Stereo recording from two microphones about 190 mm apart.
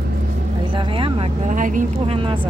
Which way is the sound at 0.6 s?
25° right (ahead or behind).